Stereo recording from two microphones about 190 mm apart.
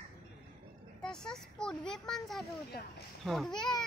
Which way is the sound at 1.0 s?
5° left (ahead or behind).